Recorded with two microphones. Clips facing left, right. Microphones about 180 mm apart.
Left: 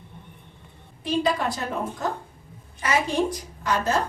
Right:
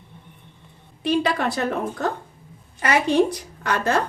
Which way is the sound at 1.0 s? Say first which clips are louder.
Right 2 dB; 70° right (ahead or behind).